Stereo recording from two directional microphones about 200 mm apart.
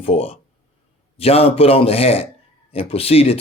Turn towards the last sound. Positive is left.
turn(degrees=30)  # may be behind; listen again after turning